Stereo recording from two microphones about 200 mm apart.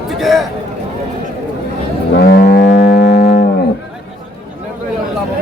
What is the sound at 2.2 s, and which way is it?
Livestock, 45° left (ahead or behind).